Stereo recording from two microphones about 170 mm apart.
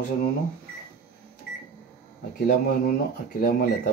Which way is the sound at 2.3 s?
60° left (ahead or behind).